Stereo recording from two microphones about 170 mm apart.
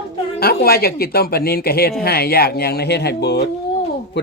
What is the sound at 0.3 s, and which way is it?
Speech, 65° left (ahead or behind).